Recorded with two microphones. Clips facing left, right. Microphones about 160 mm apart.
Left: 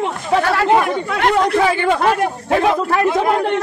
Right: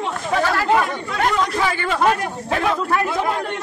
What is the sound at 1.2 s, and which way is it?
Speech, 70° left (ahead or behind).